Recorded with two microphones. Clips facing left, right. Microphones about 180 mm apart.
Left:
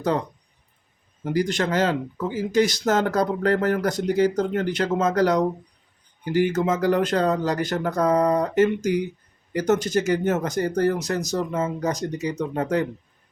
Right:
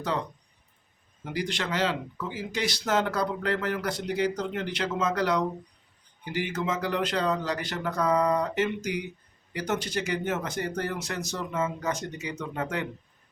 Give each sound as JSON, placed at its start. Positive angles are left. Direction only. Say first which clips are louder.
{"t": 1.2, "sound": "speech", "louder": "left 9 dB", "side_deg": 45}